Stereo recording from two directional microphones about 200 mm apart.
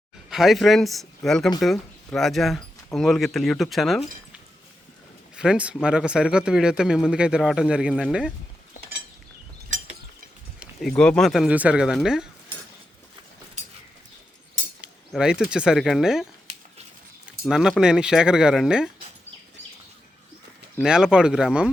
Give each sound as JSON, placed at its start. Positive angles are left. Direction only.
{"t": 0.3, "sound": "speech", "side_deg": 0}
{"t": 5.4, "sound": "speech", "side_deg": -5}
{"t": 9.6, "sound": "mechanisms", "side_deg": -40}
{"t": 10.6, "sound": "speech", "side_deg": 0}
{"t": 14.8, "sound": "speech", "side_deg": -5}
{"t": 17.4, "sound": "speech", "side_deg": -5}
{"t": 20.8, "sound": "speech", "side_deg": -5}